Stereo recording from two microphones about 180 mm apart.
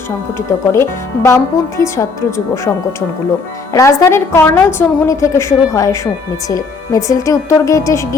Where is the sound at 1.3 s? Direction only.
15° left (ahead or behind).